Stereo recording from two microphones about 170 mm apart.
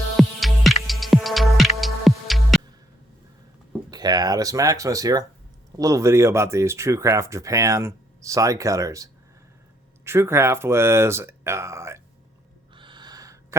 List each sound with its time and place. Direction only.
0.2 s music: centre (ahead or behind)
3.9 s speech: 25° right (ahead or behind)
12.7 s a sound: 30° right (ahead or behind)